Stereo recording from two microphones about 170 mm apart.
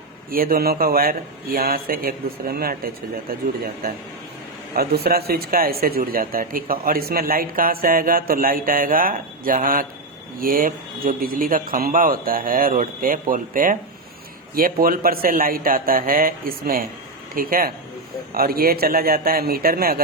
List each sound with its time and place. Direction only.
0.3 s speech: 60° right (ahead or behind)
4.7 s speech: 65° right (ahead or behind)